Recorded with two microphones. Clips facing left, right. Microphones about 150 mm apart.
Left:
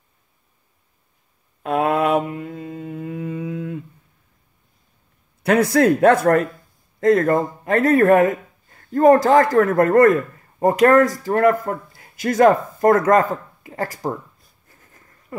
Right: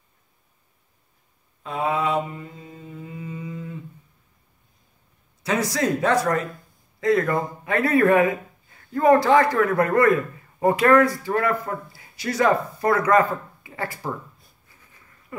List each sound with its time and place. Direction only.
1.6 s mantra: 60° left (ahead or behind)
5.4 s speech: 55° left (ahead or behind); by 14.1 s 40° left (ahead or behind)
14.7 s a sound: 45° left (ahead or behind)